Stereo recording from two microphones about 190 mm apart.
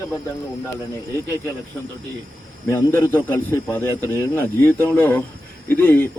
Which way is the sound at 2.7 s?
10° left (ahead or behind).